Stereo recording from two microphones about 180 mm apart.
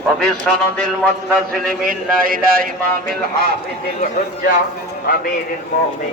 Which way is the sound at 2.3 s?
50° right (ahead or behind).